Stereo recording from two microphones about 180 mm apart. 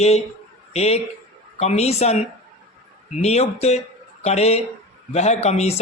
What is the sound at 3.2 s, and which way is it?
Speech, 35° left (ahead or behind).